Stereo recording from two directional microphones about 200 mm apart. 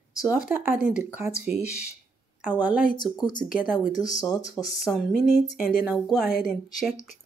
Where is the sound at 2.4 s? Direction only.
10° right (ahead or behind).